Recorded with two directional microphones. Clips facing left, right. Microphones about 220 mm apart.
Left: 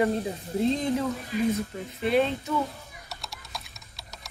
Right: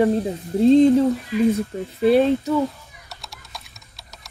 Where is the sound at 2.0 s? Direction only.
35° right (ahead or behind).